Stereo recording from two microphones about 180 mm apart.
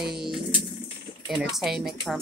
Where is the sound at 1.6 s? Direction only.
Centre (ahead or behind).